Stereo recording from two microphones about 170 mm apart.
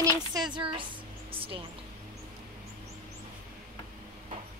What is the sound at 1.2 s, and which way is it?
Music, 30° right (ahead or behind).